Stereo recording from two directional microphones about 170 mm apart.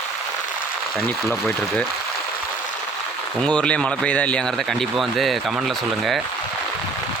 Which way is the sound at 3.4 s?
5° left (ahead or behind).